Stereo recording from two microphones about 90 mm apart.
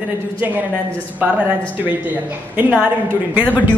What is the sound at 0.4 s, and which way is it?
Speech, 20° right (ahead or behind).